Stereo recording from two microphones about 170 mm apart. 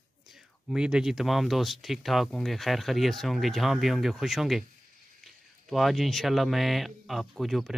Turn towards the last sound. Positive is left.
turn(degrees=0)  # may be behind; listen again after turning